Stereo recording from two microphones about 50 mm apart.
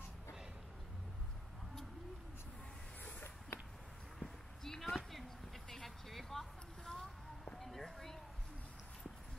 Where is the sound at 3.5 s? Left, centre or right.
Left.